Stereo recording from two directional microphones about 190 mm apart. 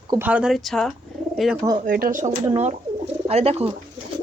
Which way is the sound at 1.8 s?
50° right (ahead or behind).